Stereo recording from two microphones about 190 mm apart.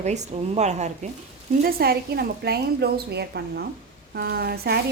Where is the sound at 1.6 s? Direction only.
55° right (ahead or behind).